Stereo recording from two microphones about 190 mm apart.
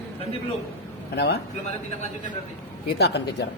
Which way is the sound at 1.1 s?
60° left (ahead or behind).